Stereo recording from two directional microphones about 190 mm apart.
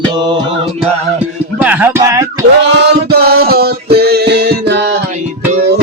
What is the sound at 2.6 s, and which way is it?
Music, 60° right (ahead or behind).